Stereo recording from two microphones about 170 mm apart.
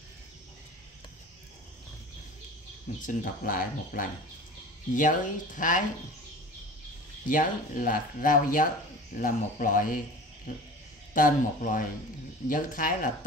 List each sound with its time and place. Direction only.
3.0 s speech: 55° left (ahead or behind)
7.2 s speech: 50° left (ahead or behind)